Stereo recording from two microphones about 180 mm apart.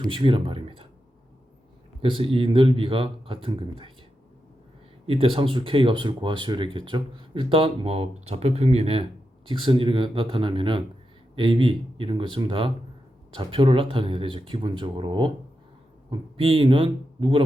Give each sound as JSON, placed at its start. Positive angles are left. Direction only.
{"t": 0.0, "sound": "speech", "side_deg": -30}
{"t": 2.0, "sound": "speech", "side_deg": -30}
{"t": 5.0, "sound": "speech", "side_deg": -30}